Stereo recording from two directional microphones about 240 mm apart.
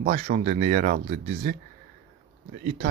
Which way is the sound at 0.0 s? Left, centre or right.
Right.